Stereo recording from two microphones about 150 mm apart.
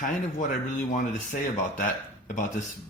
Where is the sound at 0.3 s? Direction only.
55° left (ahead or behind).